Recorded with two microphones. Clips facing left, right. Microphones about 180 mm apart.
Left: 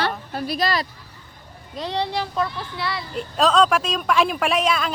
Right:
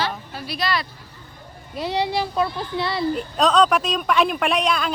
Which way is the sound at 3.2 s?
Centre (ahead or behind).